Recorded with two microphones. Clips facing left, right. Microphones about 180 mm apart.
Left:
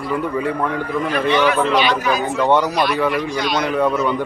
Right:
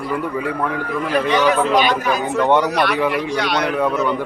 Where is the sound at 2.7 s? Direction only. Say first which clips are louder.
Even; 65° right (ahead or behind).